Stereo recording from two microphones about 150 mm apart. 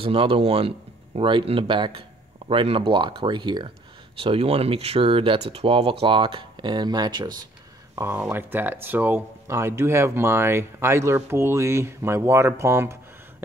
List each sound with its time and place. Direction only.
0.0 s speech: 35° right (ahead or behind)
7.9 s speech: 15° right (ahead or behind)